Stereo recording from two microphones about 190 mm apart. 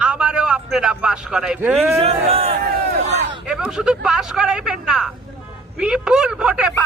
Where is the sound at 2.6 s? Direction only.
55° right (ahead or behind).